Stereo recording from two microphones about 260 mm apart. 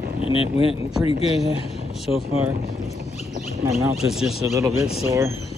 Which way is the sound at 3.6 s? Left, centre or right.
Centre.